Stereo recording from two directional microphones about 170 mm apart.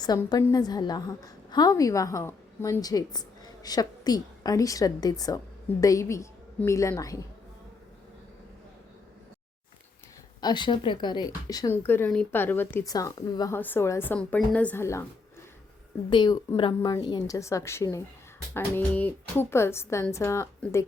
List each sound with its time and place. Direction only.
0.0 s a woman's voice: 25° left (ahead or behind)
10.4 s a woman's voice: 25° left (ahead or behind)
16.0 s a woman's voice: 25° left (ahead or behind)